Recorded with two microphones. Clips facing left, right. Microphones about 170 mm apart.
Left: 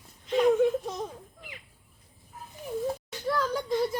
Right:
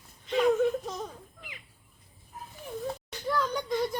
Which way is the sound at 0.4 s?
15° left (ahead or behind).